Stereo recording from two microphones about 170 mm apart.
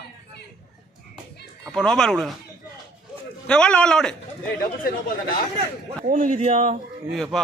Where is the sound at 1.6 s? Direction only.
5° left (ahead or behind).